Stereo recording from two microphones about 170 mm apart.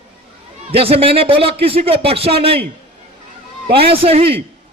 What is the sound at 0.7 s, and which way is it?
A man's voice, 35° right (ahead or behind).